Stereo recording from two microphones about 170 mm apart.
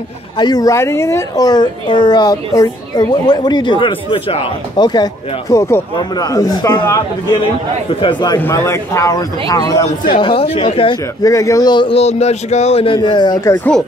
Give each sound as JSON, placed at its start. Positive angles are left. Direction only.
{"t": 0.4, "sound": "a woman's voice", "side_deg": 25}
{"t": 8.0, "sound": "a woman's voice", "side_deg": 25}
{"t": 8.4, "sound": "a woman's voice", "side_deg": 15}
{"t": 10.2, "sound": "speech", "side_deg": 35}
{"t": 11.2, "sound": "a woman's voice", "side_deg": 20}